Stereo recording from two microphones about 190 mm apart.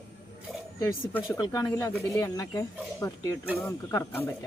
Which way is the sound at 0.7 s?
15° left (ahead or behind).